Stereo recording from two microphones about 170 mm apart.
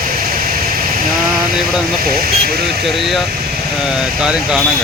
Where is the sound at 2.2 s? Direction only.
65° right (ahead or behind).